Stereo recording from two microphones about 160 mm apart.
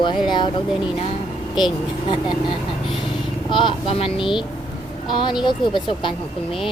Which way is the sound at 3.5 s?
30° left (ahead or behind).